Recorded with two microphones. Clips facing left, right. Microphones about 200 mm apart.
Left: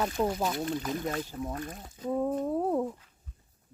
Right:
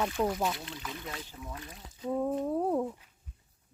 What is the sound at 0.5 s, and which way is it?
Speech, 45° left (ahead or behind).